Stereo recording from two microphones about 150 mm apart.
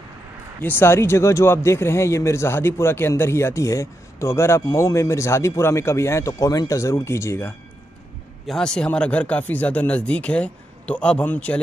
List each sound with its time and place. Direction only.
0.6 s speech: 15° left (ahead or behind)
8.5 s speech: 5° left (ahead or behind)